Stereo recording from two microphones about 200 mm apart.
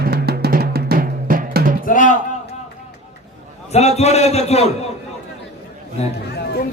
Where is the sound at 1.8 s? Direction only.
40° left (ahead or behind).